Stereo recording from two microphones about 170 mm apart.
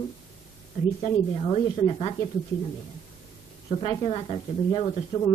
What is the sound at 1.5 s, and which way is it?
Speech, 30° left (ahead or behind).